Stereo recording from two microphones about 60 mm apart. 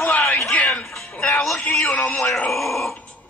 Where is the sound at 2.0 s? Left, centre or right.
Centre.